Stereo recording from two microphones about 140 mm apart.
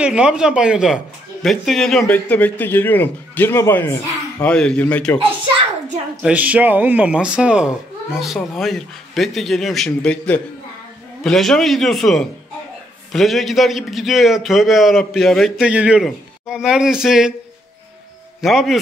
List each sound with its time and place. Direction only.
0.0 s a man's voice: 5° right (ahead or behind); by 3.9 s 20° left (ahead or behind)
4.4 s a man's voice: 5° left (ahead or behind)
6.2 s a man's voice: 10° right (ahead or behind)
18.4 s a man's voice: centre (ahead or behind)